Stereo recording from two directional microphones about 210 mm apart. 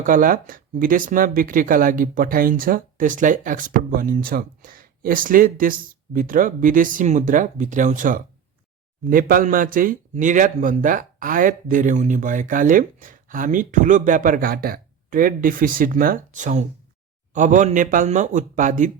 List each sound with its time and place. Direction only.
0.0 s speech: 40° right (ahead or behind)